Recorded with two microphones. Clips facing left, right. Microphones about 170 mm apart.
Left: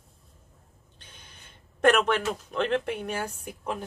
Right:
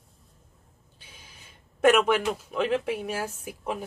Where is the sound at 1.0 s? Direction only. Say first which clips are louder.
Right 1 dB; 5° right (ahead or behind).